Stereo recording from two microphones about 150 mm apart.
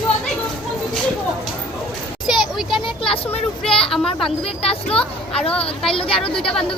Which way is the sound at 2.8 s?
35° left (ahead or behind).